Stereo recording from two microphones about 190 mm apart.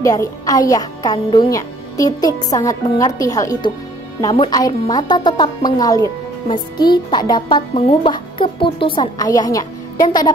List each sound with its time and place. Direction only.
0.0 s speech: 15° left (ahead or behind)